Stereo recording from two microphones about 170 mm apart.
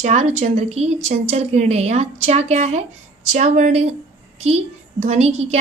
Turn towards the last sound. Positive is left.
turn(degrees=-40)  # may be behind; listen again after turning